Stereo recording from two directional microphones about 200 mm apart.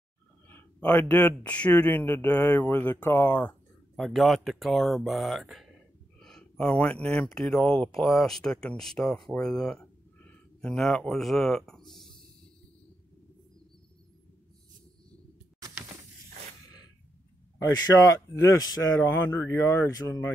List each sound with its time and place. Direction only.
0.5 s a man's voice: 10° left (ahead or behind)
17.6 s a man's voice: 15° left (ahead or behind)